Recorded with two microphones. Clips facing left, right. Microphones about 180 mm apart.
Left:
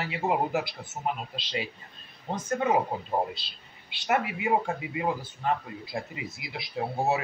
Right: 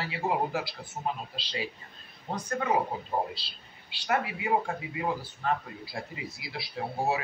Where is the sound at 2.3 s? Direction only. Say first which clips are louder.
Left 3 dB; 20° left (ahead or behind).